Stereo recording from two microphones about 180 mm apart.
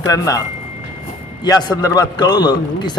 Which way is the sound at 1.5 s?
20° left (ahead or behind).